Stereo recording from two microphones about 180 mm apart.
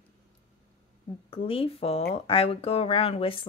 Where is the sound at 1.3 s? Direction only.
30° left (ahead or behind).